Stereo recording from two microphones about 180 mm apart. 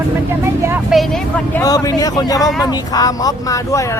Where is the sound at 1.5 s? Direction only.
20° left (ahead or behind).